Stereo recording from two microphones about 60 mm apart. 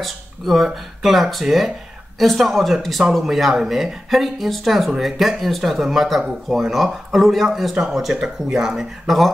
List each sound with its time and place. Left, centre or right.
0.0 s speech: centre